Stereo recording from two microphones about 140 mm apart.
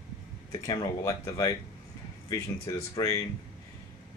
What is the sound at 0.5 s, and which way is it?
Speech, 25° left (ahead or behind).